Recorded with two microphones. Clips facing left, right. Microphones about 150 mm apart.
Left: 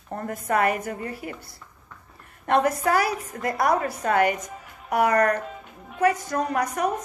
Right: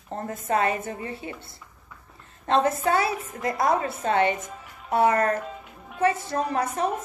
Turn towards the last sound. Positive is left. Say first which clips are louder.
# left 1 dB
turn(degrees=-25)  # may be behind; listen again after turning